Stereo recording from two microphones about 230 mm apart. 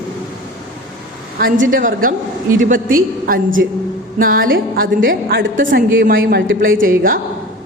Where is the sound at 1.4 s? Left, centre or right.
Right.